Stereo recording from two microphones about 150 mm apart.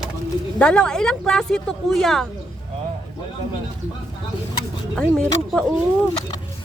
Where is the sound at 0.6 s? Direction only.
5° left (ahead or behind).